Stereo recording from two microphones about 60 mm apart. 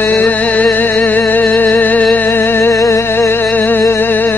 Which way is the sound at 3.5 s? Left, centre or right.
Left.